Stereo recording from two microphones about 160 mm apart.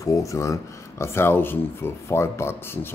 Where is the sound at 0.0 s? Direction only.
20° left (ahead or behind).